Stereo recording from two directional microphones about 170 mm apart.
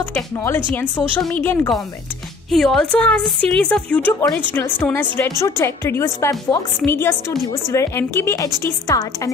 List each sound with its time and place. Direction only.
0.1 s speech: 10° left (ahead or behind)